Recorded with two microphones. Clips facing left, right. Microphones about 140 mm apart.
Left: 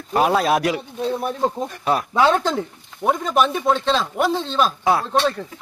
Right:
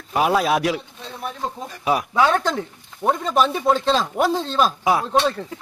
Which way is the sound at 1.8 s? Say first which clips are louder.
Even; 10° right (ahead or behind).